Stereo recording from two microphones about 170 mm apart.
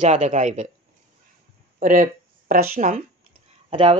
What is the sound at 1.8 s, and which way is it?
Speech, 55° right (ahead or behind).